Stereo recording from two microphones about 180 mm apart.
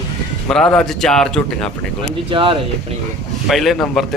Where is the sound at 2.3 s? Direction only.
30° right (ahead or behind).